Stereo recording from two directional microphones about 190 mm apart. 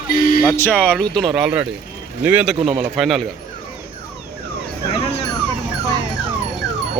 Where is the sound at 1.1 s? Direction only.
Centre (ahead or behind).